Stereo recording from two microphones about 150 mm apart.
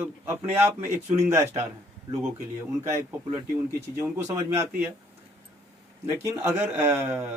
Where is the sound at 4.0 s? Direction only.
20° right (ahead or behind).